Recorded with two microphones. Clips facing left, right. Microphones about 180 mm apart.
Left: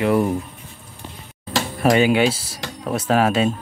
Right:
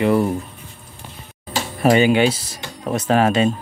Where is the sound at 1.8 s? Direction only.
Centre (ahead or behind).